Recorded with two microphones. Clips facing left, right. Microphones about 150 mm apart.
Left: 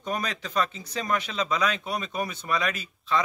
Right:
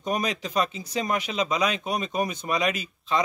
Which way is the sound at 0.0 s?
15° right (ahead or behind).